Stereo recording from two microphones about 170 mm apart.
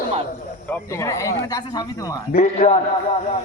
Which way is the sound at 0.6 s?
15° left (ahead or behind).